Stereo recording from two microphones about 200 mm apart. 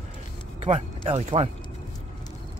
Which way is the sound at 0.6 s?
30° right (ahead or behind).